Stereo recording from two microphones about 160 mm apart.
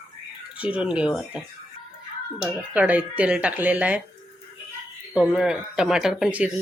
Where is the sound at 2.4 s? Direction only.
10° right (ahead or behind).